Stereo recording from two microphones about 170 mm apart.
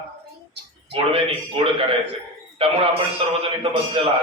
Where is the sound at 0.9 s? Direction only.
35° right (ahead or behind).